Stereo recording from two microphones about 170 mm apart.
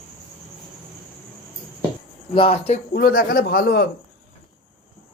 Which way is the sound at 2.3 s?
35° left (ahead or behind).